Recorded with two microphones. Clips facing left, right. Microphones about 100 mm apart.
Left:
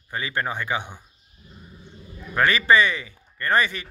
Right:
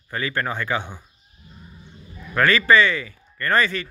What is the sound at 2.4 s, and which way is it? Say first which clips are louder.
Speech: right 2 dB; 20° left (ahead or behind).